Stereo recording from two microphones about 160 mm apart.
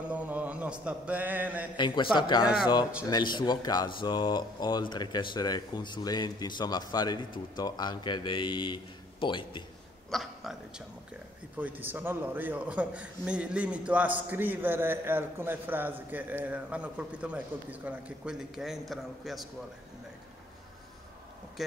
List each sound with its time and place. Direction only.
0.1 s a man's voice: 10° right (ahead or behind)
1.8 s speech: 30° left (ahead or behind)
10.1 s a man's voice: centre (ahead or behind)
21.6 s speech: centre (ahead or behind)